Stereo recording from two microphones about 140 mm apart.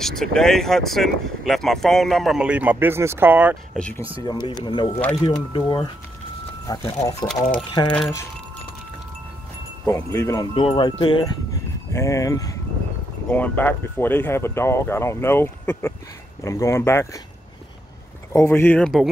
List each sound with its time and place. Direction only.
0.0 s speech: 5° left (ahead or behind); by 3.5 s 10° right (ahead or behind)
4.2 s speech: 30° left (ahead or behind)
9.8 s speech: 20° left (ahead or behind)
10.5 s speech: 35° left (ahead or behind)
11.9 s speech: 20° left (ahead or behind)
13.3 s speech: 10° left (ahead or behind)
18.3 s speech: 20° left (ahead or behind)